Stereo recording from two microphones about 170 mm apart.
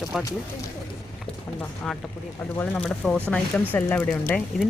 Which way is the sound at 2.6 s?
5° left (ahead or behind).